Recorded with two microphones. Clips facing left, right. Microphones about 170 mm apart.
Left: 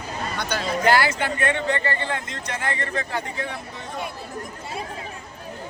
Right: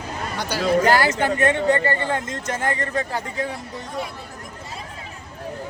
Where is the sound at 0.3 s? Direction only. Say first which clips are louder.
Right 7 dB; 35° right (ahead or behind).